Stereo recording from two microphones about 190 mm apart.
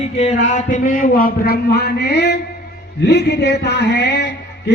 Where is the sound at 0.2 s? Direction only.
35° left (ahead or behind).